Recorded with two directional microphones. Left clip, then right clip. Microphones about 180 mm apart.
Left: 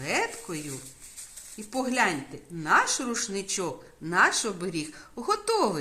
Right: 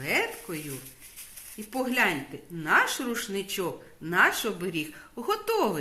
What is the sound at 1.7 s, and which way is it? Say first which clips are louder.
A woman's voice: even; 40° left (ahead or behind).